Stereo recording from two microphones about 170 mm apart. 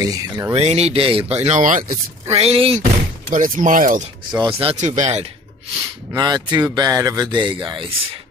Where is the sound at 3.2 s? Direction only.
55° right (ahead or behind).